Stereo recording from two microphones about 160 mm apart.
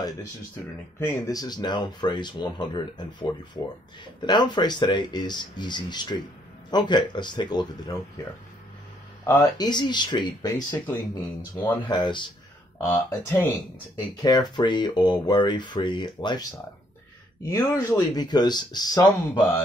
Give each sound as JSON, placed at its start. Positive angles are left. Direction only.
{"t": 0.9, "sound": "speech", "side_deg": 15}
{"t": 9.2, "sound": "speech", "side_deg": 20}
{"t": 12.8, "sound": "speech", "side_deg": 15}
{"t": 13.9, "sound": "speech", "side_deg": 25}